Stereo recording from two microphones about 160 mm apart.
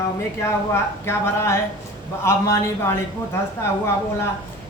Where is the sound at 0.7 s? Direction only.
15° left (ahead or behind).